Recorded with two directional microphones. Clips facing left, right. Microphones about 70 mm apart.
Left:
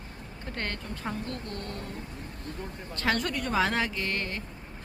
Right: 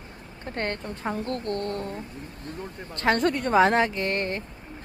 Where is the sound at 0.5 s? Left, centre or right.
Right.